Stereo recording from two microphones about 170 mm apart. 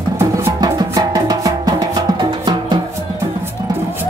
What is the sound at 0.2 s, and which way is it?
Music, 15° right (ahead or behind).